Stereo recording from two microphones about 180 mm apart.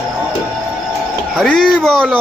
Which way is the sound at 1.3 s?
Centre (ahead or behind).